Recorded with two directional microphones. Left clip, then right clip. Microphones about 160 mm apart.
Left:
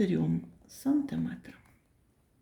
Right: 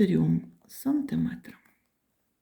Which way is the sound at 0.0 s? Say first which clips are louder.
Right 4 dB; 35° right (ahead or behind).